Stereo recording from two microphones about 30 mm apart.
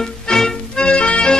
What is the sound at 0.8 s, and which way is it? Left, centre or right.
Music, left.